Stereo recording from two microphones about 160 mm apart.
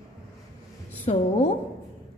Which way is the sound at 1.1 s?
40° left (ahead or behind).